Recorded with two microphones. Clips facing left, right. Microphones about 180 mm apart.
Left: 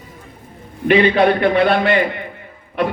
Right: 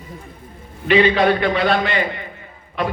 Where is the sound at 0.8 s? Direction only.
55° left (ahead or behind).